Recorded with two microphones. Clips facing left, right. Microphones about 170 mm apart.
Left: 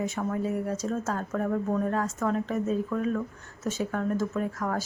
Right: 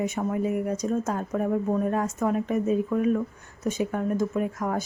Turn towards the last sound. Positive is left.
turn(degrees=-20)  # may be behind; listen again after turning